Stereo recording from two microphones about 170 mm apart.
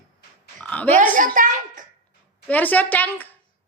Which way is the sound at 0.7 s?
10° left (ahead or behind).